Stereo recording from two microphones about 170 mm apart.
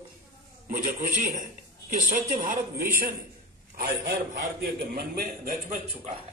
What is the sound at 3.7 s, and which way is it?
A man's voice, 80° right.